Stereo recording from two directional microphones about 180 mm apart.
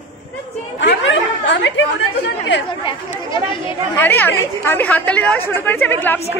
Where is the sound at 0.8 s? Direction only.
85° left.